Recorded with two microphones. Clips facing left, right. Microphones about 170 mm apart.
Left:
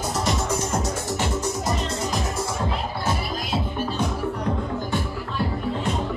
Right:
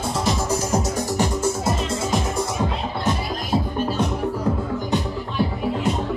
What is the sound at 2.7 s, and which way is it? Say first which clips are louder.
Music: right 2 dB; 25° right (ahead or behind).